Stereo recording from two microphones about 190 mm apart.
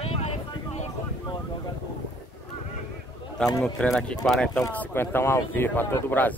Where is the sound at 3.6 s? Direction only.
5° left (ahead or behind).